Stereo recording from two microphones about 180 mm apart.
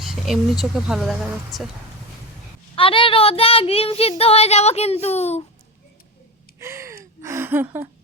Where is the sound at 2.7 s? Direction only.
30° left (ahead or behind).